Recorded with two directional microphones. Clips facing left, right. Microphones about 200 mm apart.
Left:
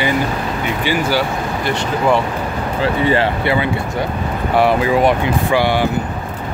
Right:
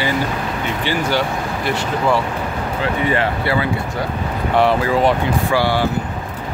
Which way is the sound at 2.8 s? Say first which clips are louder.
Left 4 dB; 30° left (ahead or behind).